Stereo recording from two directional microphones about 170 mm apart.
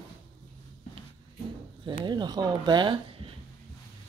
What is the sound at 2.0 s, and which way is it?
Speech, 25° right (ahead or behind).